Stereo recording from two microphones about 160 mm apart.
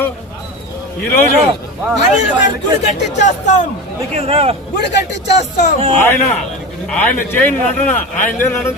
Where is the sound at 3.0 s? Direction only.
90° left.